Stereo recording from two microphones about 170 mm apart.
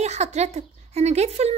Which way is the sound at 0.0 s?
40° right (ahead or behind).